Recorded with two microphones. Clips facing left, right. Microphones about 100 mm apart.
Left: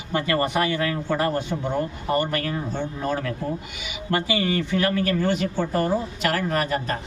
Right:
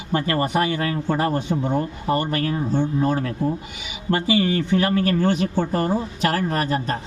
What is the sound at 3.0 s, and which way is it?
Speech, 30° right (ahead or behind).